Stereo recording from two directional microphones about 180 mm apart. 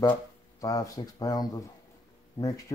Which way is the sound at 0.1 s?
20° left (ahead or behind).